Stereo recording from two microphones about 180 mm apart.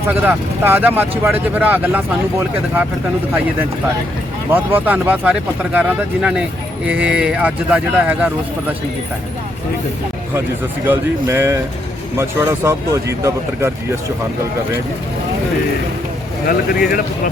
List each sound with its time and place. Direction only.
0.1 s speech: 10° right (ahead or behind)
4.5 s speech: 10° right (ahead or behind)
10.8 s speech: 15° right (ahead or behind)
16.5 s speech: 55° left (ahead or behind)